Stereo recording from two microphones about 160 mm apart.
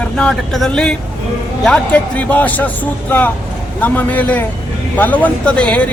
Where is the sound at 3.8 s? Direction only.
10° left (ahead or behind).